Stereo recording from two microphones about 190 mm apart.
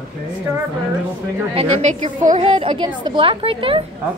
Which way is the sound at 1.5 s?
40° right (ahead or behind).